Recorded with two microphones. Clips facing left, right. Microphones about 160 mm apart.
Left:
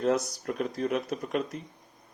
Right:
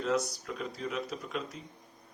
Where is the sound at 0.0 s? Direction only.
55° left (ahead or behind).